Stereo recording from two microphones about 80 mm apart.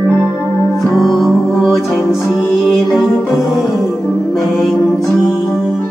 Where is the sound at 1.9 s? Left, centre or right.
Left.